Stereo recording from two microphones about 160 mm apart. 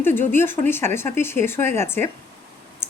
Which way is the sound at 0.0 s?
15° left (ahead or behind).